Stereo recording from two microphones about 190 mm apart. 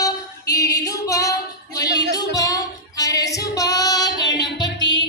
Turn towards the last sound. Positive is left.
turn(degrees=20)  # may be behind; listen again after turning